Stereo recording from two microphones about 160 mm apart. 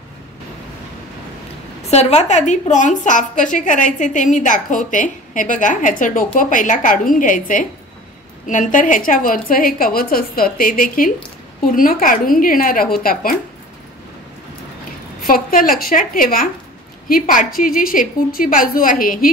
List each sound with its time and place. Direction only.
1.9 s a woman's voice: 45° left (ahead or behind); by 13.4 s 65° left (ahead or behind)
15.2 s a woman's voice: 60° left (ahead or behind)